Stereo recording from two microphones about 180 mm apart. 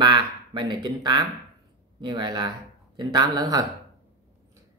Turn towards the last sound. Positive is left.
turn(degrees=-20)  # may be behind; listen again after turning